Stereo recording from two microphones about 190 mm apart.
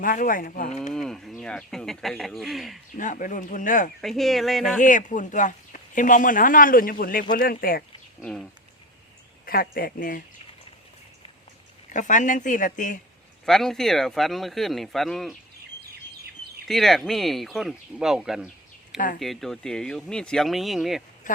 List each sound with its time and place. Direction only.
0.0 s speech: 45° left (ahead or behind)
0.9 s speech: centre (ahead or behind)
3.0 s speech: 40° left (ahead or behind)
4.0 s speech: centre (ahead or behind)
4.8 s speech: 40° left (ahead or behind)
8.2 s speech: 5° left (ahead or behind)
9.5 s speech: 50° left (ahead or behind)
11.9 s speech: 40° left (ahead or behind)
13.4 s speech: centre (ahead or behind)
16.6 s speech: centre (ahead or behind)
18.9 s speech: 45° left (ahead or behind)
19.2 s speech: centre (ahead or behind)
21.2 s speech: 45° left (ahead or behind)